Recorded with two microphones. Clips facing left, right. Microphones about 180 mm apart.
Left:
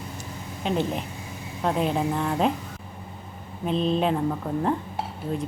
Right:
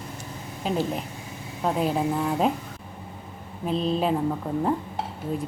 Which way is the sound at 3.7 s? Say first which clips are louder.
Left 1 dB; centre (ahead or behind).